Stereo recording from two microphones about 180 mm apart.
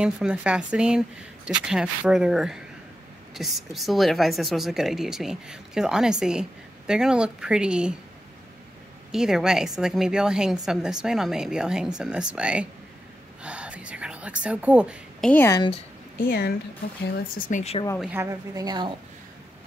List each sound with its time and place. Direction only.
0.0 s a woman's voice: 5° right (ahead or behind)
9.1 s a woman's voice: 5° right (ahead or behind)
13.4 s whispering: 5° right (ahead or behind)
15.2 s speech: 10° left (ahead or behind)
15.5 s speech: 25° left (ahead or behind)
16.2 s a woman's voice: 55° left (ahead or behind)
17.5 s speech: 45° left (ahead or behind)
18.1 s a woman's voice: 15° right (ahead or behind)